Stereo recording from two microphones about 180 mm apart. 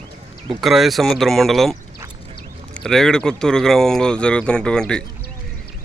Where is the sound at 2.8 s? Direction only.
Centre (ahead or behind).